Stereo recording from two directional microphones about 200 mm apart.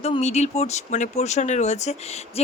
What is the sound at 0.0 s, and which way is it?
Speech, 30° left (ahead or behind).